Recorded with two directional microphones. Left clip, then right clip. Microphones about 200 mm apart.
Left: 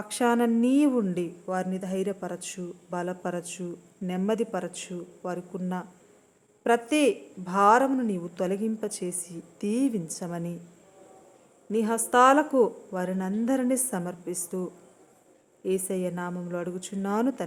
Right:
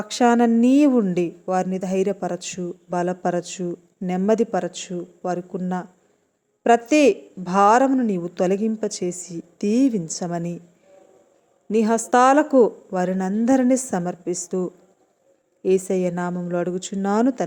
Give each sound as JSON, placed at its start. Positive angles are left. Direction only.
{"t": 0.0, "sound": "a woman's voice", "side_deg": -20}
{"t": 11.7, "sound": "a woman's voice", "side_deg": -25}